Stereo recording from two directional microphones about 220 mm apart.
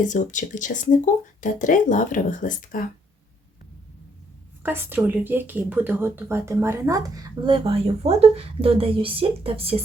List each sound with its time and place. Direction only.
0.0 s speech: 35° left (ahead or behind)
4.6 s a woman's voice: 10° right (ahead or behind); by 9.8 s 25° right (ahead or behind)